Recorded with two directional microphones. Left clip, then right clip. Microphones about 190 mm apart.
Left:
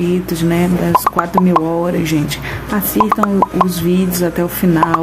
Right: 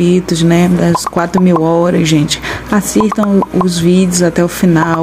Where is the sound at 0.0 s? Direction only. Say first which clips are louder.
Right 5 dB; 20° right (ahead or behind).